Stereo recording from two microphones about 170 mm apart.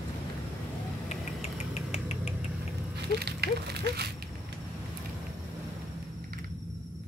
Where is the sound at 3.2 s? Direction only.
70° right (ahead or behind).